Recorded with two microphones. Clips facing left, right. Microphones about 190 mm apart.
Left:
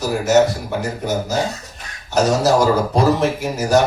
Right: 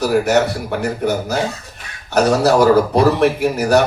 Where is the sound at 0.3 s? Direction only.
60° right (ahead or behind).